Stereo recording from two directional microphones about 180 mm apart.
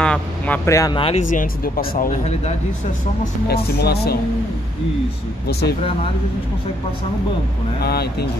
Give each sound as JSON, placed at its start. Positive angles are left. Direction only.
{"t": 0.0, "sound": "a sound", "side_deg": 5}
{"t": 0.7, "sound": "speech", "side_deg": 15}
{"t": 0.9, "sound": "speech", "side_deg": 30}
{"t": 1.3, "sound": "speech", "side_deg": 50}
{"t": 3.8, "sound": "speech", "side_deg": 65}
{"t": 5.5, "sound": "speech", "side_deg": 65}
{"t": 7.8, "sound": "speech", "side_deg": 60}